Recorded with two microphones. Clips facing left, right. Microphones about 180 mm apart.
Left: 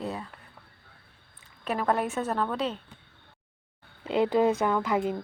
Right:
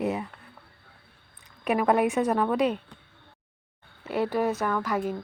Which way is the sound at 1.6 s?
15° right (ahead or behind).